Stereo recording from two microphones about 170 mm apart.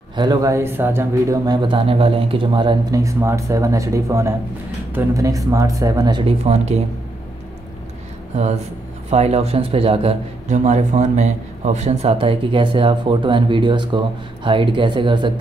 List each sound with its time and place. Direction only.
0.1 s speech: 25° right (ahead or behind)
9.1 s speech: 40° right (ahead or behind)